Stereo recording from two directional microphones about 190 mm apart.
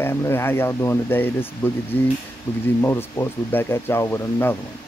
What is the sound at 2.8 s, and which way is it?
Speech, 15° left (ahead or behind).